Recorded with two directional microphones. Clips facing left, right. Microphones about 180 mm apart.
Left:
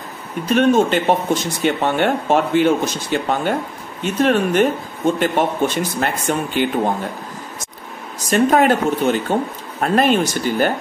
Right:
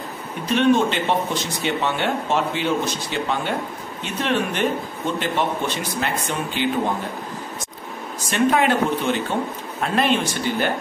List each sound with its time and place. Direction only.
0.6 s speech: 45° left (ahead or behind)
8.3 s speech: 45° left (ahead or behind)